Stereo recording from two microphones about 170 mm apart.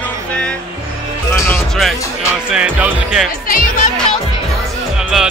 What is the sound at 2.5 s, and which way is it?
Speech, 5° right (ahead or behind).